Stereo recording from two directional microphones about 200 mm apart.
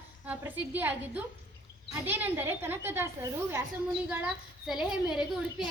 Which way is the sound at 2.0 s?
10° right (ahead or behind).